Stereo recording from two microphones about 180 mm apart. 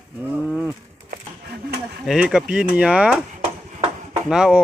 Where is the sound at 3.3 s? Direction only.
40° right (ahead or behind).